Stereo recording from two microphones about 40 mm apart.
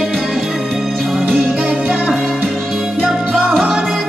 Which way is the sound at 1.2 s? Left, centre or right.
Right.